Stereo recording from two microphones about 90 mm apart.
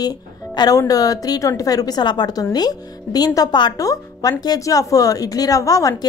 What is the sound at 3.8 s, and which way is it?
A woman's voice, 40° left (ahead or behind).